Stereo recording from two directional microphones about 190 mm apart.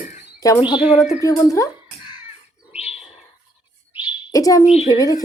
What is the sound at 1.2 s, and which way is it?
Speech, 15° left (ahead or behind).